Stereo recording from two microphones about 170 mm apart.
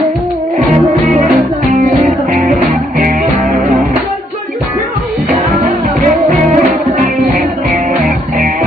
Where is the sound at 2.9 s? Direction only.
50° right (ahead or behind).